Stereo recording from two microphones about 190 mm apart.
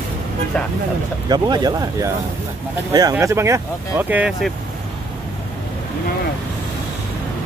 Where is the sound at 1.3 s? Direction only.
20° right (ahead or behind); by 4.5 s 5° right (ahead or behind).